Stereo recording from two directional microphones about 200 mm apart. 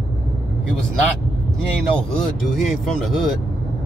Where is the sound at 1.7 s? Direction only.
Centre (ahead or behind).